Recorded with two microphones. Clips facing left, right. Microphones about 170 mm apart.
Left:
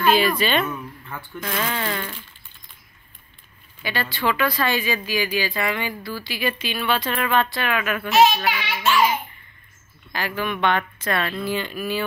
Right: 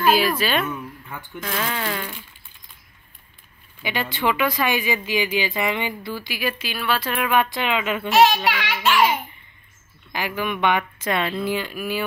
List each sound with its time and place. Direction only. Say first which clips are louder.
0.0 s speech: even; 5° right (ahead or behind)
3.8 s speech: right 1 dB; 15° right (ahead or behind)
10.1 s speech: even; 15° right (ahead or behind)